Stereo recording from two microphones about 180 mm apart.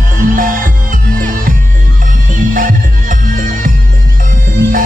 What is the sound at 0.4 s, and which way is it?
Music, 50° right (ahead or behind).